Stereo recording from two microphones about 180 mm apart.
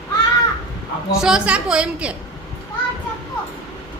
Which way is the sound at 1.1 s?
5° right (ahead or behind).